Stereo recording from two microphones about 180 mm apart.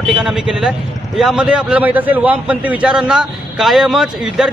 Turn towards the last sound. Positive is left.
turn(degrees=0)  # may be behind; listen again after turning